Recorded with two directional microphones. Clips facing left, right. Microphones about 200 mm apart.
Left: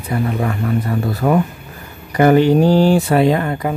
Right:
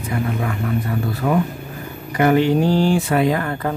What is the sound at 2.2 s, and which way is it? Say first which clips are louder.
Speech: left 4 dB; 40° left (ahead or behind).